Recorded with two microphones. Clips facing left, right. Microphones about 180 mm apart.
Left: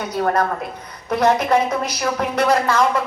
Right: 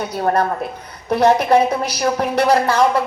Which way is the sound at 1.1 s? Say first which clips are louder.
Right 3 dB; 30° right (ahead or behind).